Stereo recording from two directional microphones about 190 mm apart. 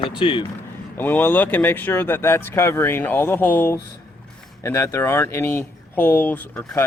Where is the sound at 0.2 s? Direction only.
25° left (ahead or behind).